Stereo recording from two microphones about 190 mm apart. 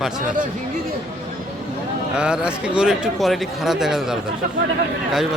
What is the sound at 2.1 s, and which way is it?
Speech, 5° right (ahead or behind).